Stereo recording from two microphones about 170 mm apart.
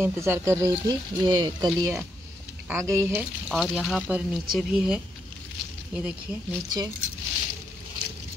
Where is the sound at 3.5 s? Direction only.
Centre (ahead or behind).